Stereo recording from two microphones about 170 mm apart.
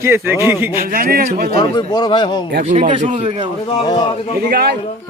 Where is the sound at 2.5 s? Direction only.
45° right (ahead or behind).